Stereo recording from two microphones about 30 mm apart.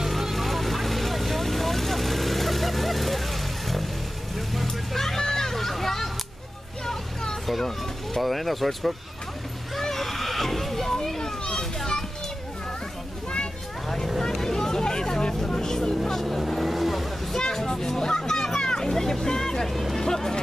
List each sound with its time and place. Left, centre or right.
0.0 s vehicle: centre
4.6 s vehicle: centre
6.9 s vehicle: centre
8.2 s speech: centre
9.8 s children playing: centre
14.3 s vehicle: centre
15.9 s vehicle: centre
17.6 s music: centre
18.6 s vehicle: left
18.9 s vehicle: centre
19.7 s music: centre
20.0 s music: centre